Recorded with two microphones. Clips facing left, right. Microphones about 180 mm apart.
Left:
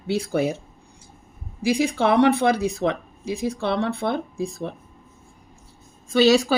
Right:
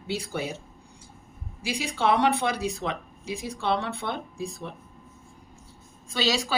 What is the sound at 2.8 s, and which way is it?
Speech, 65° left (ahead or behind).